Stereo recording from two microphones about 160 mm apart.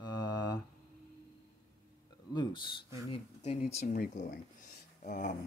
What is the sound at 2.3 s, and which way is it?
Speech, 30° left (ahead or behind).